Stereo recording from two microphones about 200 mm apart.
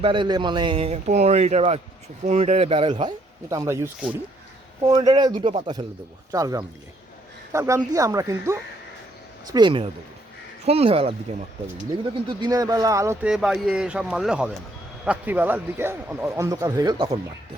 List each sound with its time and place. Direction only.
0.0 s a man's voice: 25° right (ahead or behind)
12.3 s a man's voice: 20° right (ahead or behind)
13.3 s a man's voice: centre (ahead or behind); by 17.2 s 20° right (ahead or behind)